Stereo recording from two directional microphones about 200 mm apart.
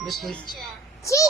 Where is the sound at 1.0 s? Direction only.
15° left (ahead or behind).